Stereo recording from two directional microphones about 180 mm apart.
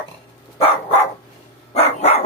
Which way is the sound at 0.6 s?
35° left (ahead or behind).